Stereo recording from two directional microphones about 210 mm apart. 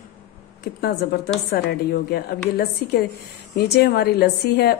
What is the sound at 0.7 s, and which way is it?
A woman's voice, 45° left (ahead or behind).